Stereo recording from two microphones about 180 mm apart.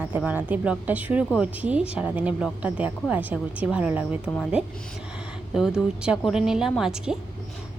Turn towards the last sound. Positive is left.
turn(degrees=-5)  # may be behind; listen again after turning